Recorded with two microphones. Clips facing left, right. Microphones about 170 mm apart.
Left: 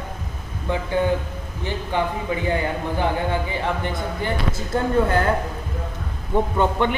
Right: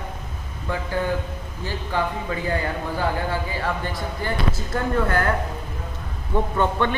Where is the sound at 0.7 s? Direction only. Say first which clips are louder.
Left 4 dB; 20° left (ahead or behind).